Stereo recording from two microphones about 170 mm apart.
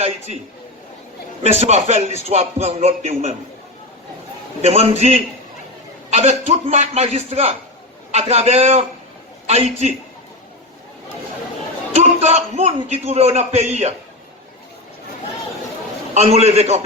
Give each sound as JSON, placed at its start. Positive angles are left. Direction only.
{"t": 1.5, "sound": "a man's voice", "side_deg": -40}
{"t": 4.6, "sound": "a man's voice", "side_deg": -40}
{"t": 11.9, "sound": "a man's voice", "side_deg": -40}
{"t": 16.1, "sound": "a man's voice", "side_deg": -40}